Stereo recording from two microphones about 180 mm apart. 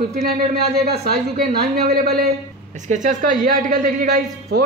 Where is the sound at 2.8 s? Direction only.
45° right (ahead or behind).